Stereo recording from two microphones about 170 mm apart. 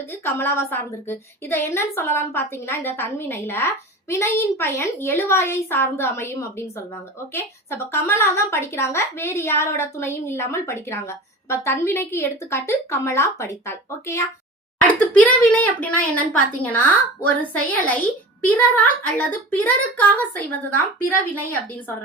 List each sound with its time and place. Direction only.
0.1 s speech: 15° left (ahead or behind)